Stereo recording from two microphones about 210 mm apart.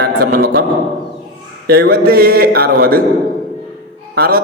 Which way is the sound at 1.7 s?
45° right (ahead or behind).